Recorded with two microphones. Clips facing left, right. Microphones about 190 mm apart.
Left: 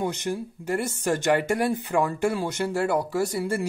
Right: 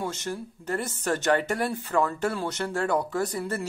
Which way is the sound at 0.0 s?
15° left (ahead or behind).